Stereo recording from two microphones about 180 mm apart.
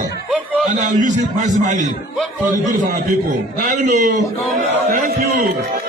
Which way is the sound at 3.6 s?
45° right (ahead or behind).